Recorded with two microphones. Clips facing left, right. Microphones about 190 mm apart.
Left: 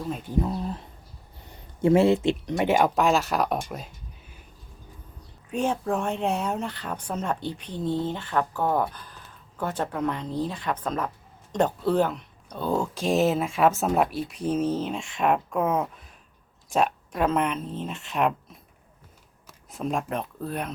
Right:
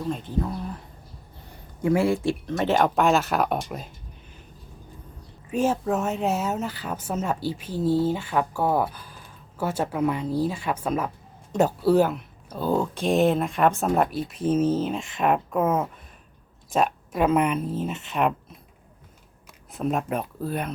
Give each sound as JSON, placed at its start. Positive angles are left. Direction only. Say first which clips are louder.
{"t": 0.1, "sound": "speech", "louder": "right 2 dB", "side_deg": 10}
{"t": 0.4, "sound": "speech", "louder": "left 2 dB", "side_deg": 25}
{"t": 1.8, "sound": "speech", "louder": "left 3 dB", "side_deg": 25}
{"t": 2.9, "sound": "speech", "louder": "right 1 dB", "side_deg": 0}
{"t": 5.5, "sound": "speech", "louder": "right 2 dB", "side_deg": -5}
{"t": 19.7, "sound": "speech", "louder": "right 2 dB", "side_deg": -5}